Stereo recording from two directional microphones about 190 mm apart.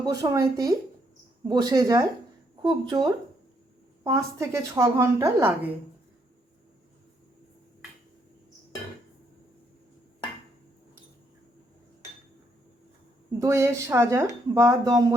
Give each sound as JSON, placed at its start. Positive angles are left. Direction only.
{"t": 0.0, "sound": "a woman's voice", "side_deg": -20}
{"t": 13.4, "sound": "a woman's voice", "side_deg": -15}